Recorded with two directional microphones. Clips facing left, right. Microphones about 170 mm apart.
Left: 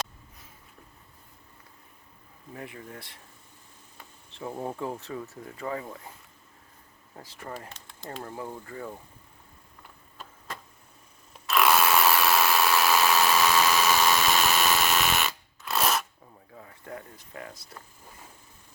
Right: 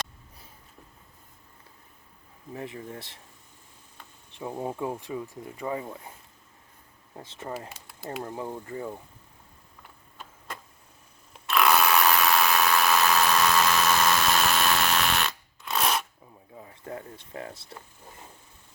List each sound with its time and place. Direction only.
2.5 s speech: 25° right (ahead or behind)
4.4 s speech: 10° right (ahead or behind)
7.2 s speech: 20° right (ahead or behind)
7.7 s a sound: 10° right (ahead or behind)
8.2 s speech: 20° right (ahead or behind)
11.4 s a sound: centre (ahead or behind)
16.6 s speech: 25° right (ahead or behind)